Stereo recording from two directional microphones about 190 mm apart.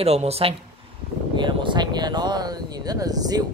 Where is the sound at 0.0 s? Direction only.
35° right (ahead or behind).